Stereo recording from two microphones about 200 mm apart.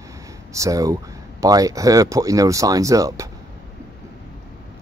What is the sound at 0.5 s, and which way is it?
Speech, 15° right (ahead or behind).